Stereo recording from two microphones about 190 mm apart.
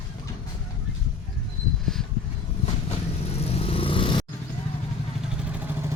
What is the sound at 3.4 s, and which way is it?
Vehicle, 30° left (ahead or behind).